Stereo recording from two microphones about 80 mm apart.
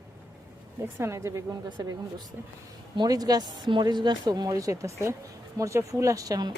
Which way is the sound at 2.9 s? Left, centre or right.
Right.